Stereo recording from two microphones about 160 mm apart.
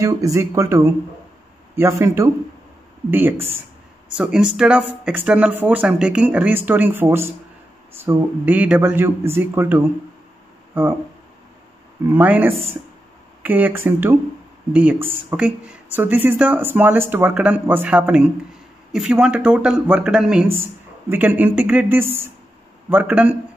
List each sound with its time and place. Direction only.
0.0 s speech: 20° right (ahead or behind)
12.1 s a man's voice: 10° right (ahead or behind)